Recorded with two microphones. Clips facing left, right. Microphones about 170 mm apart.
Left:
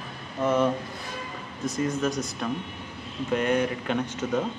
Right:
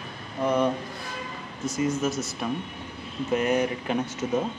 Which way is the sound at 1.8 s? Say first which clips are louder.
Right 1 dB; 5° right (ahead or behind).